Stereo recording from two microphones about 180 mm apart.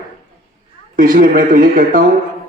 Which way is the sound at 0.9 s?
50° right (ahead or behind).